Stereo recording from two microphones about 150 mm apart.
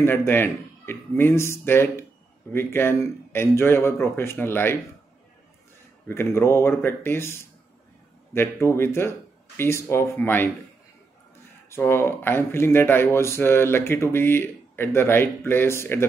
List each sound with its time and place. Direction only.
0.0 s speech: 15° left (ahead or behind)
6.0 s speech: 15° left (ahead or behind)
11.7 s speech: 15° left (ahead or behind)